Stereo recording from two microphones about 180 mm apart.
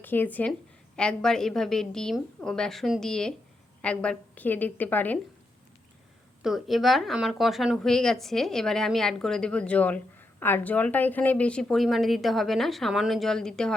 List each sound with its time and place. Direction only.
0.0 s a woman's voice: 10° left (ahead or behind)
6.4 s speech: centre (ahead or behind)